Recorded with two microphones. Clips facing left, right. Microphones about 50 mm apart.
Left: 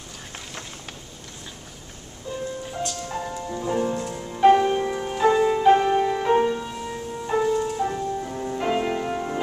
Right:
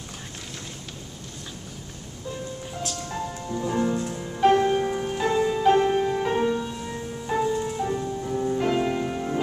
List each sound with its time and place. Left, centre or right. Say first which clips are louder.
2.8 s music: left 1 dB; centre
5.3 s music: left 2 dB; left
5.6 s music: left 1 dB; centre
5.9 s music: left 2 dB; left
6.2 s music: left 3 dB; centre